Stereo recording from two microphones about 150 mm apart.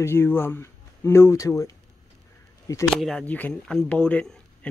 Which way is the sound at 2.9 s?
Centre (ahead or behind).